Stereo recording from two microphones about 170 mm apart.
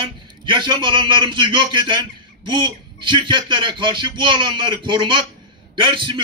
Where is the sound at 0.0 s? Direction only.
30° right (ahead or behind).